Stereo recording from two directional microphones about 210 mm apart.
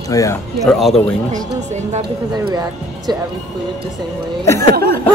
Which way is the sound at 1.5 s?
35° right (ahead or behind).